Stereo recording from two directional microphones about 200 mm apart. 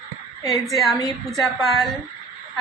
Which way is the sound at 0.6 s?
Centre (ahead or behind).